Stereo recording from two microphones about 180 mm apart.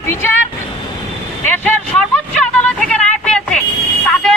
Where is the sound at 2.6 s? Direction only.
5° left (ahead or behind).